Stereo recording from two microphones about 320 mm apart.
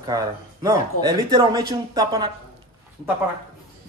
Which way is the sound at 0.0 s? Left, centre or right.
Centre.